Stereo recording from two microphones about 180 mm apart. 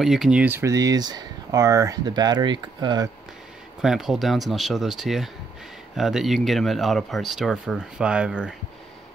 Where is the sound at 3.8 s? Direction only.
Centre (ahead or behind).